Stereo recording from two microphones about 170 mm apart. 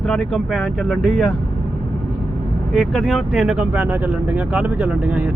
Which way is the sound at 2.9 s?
5° left (ahead or behind).